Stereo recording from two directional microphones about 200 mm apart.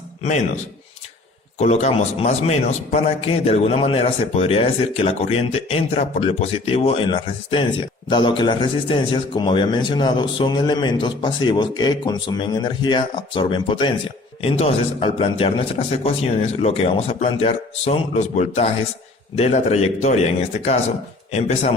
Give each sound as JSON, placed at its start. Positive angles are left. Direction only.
{"t": 0.2, "sound": "a man's voice", "side_deg": 35}